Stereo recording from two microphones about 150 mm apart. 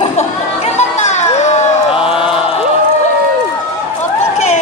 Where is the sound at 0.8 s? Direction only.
50° left (ahead or behind).